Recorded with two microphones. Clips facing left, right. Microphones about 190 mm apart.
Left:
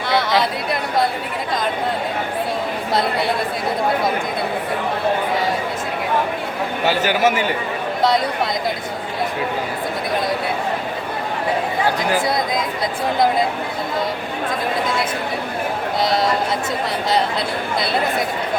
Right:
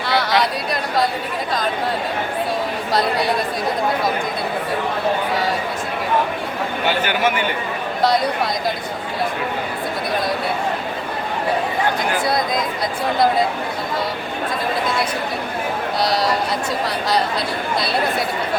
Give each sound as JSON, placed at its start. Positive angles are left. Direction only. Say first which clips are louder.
{"t": 0.1, "sound": "chatter", "louder": "left 1 dB", "side_deg": 25}
{"t": 6.8, "sound": "a man's voice", "louder": "left 3 dB", "side_deg": 40}